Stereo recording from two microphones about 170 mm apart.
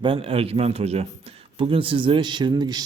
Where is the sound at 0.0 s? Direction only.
30° right (ahead or behind).